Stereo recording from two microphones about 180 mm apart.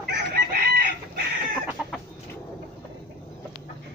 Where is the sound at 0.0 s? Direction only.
60° right (ahead or behind).